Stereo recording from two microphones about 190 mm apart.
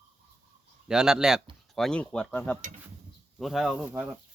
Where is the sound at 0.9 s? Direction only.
5° right (ahead or behind).